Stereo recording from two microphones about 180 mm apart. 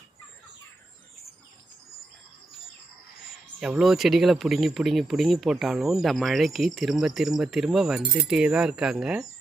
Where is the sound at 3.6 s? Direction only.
5° right (ahead or behind).